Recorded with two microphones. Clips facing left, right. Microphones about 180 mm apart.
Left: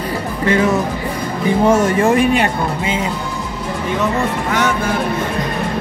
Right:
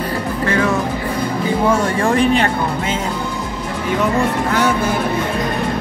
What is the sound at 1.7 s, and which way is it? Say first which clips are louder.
Speech: left 4 dB; 20° left (ahead or behind).